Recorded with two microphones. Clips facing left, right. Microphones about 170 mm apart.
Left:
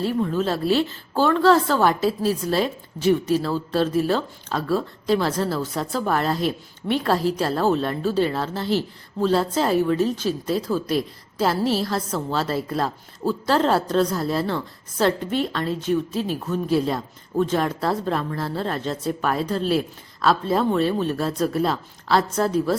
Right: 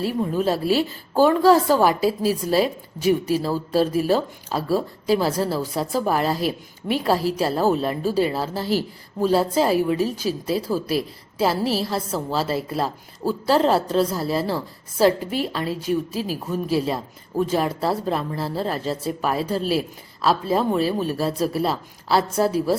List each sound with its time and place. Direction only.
0.2 s a woman's voice: 10° right (ahead or behind)